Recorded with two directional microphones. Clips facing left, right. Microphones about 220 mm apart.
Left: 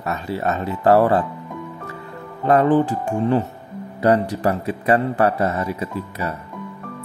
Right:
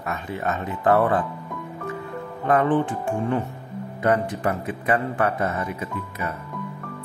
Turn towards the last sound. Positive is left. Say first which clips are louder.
# left 4 dB
turn(degrees=35)  # may be behind; listen again after turning